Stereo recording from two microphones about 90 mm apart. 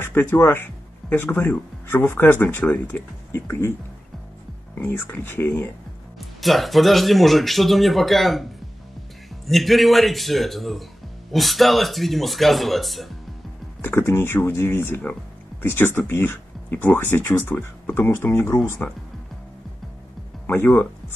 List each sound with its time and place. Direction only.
0.0 s speech: 25° left (ahead or behind)
4.7 s speech: 25° left (ahead or behind)
6.1 s speech: centre (ahead or behind)
9.5 s speech: centre (ahead or behind)
13.7 s speech: 25° left (ahead or behind)
20.6 s speech: 15° left (ahead or behind)